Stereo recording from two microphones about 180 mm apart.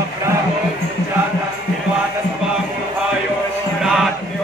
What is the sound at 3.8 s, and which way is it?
Chant, centre (ahead or behind).